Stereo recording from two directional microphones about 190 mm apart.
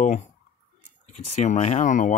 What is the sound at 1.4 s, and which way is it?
Speech, 35° left (ahead or behind).